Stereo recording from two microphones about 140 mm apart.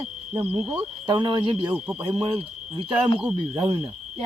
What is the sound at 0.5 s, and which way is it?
Speech, 35° right (ahead or behind).